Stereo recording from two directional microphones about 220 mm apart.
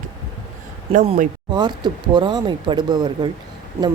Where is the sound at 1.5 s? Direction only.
20° right (ahead or behind).